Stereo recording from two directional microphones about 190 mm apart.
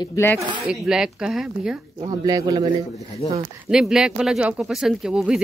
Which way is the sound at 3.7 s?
5° right (ahead or behind).